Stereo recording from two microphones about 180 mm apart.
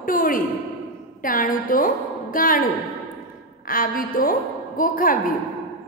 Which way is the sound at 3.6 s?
50° left (ahead or behind).